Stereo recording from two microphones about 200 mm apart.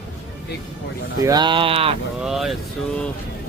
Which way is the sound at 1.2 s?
20° right (ahead or behind).